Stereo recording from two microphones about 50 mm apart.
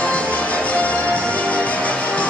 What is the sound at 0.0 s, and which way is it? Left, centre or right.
Music, left.